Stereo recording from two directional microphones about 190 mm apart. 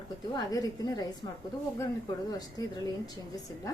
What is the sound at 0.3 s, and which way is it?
Speech, 20° left (ahead or behind).